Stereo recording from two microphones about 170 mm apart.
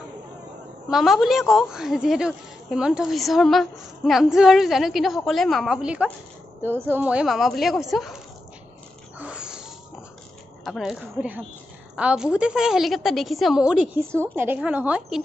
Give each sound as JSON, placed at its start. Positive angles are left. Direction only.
{"t": 0.8, "sound": "a woman's voice", "side_deg": 0}
{"t": 9.2, "sound": "a sound", "side_deg": -5}
{"t": 10.6, "sound": "a woman's voice", "side_deg": 0}